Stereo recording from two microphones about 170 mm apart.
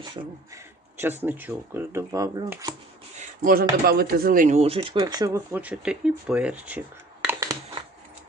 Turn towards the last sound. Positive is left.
turn(degrees=-15)  # may be behind; listen again after turning